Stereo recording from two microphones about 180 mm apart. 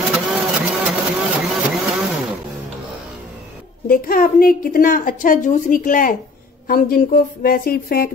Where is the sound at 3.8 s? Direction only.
50° left (ahead or behind).